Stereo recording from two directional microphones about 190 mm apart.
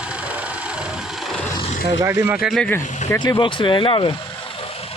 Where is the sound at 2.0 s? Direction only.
10° right (ahead or behind); by 3.2 s 5° left (ahead or behind).